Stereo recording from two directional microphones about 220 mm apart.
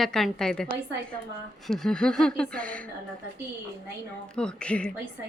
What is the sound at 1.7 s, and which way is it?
A woman's voice, centre (ahead or behind).